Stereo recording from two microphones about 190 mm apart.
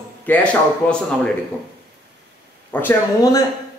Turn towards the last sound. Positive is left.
turn(degrees=20)  # may be behind; listen again after turning